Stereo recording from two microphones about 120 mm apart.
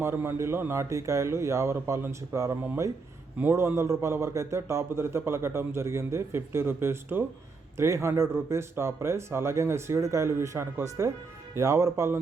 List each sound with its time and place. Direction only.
0.0 s a man's voice: 20° right (ahead or behind)